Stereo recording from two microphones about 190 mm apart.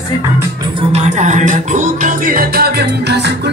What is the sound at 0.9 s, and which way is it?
Music, 35° right (ahead or behind).